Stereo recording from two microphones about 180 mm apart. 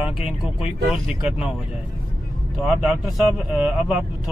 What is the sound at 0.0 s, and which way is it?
Speech, 30° left (ahead or behind).